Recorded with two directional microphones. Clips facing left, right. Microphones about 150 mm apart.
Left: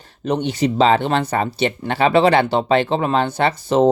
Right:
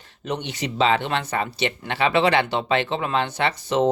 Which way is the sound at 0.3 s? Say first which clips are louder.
Left 9 dB; 40° left (ahead or behind).